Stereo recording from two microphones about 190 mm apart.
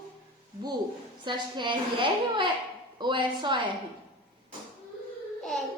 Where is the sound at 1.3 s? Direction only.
25° right (ahead or behind).